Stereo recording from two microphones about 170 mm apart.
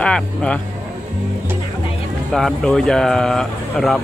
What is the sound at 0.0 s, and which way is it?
Speech, 5° left (ahead or behind).